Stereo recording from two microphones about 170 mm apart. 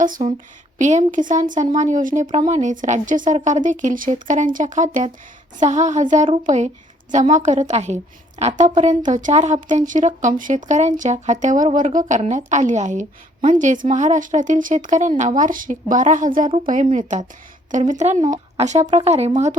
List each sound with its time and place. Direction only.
0.0 s speech: 50° right (ahead or behind)